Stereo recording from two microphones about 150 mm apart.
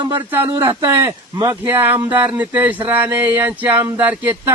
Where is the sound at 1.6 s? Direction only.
10° right (ahead or behind).